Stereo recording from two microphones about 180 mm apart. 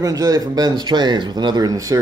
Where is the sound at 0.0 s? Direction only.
20° right (ahead or behind).